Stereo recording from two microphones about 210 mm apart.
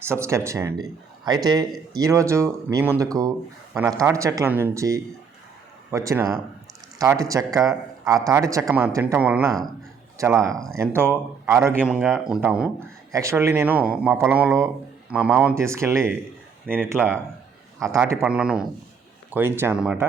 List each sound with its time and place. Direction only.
0.0 s speech: 10° right (ahead or behind)
10.2 s speech: 15° right (ahead or behind)
11.8 s a man's voice: centre (ahead or behind)
13.1 s a man's voice: 15° right (ahead or behind)